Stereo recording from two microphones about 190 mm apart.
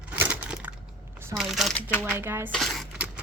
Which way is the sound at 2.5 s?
Centre (ahead or behind).